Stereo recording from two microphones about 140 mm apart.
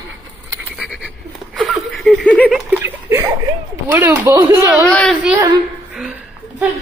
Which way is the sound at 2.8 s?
15° right (ahead or behind).